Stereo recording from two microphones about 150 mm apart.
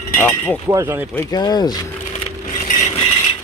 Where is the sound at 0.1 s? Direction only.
15° left (ahead or behind).